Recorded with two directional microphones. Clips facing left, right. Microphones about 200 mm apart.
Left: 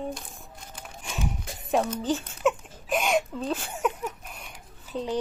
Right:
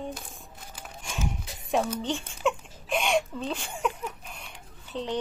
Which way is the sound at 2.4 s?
5° left (ahead or behind).